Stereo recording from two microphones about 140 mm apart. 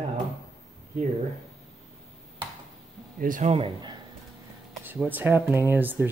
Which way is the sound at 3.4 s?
50° right (ahead or behind).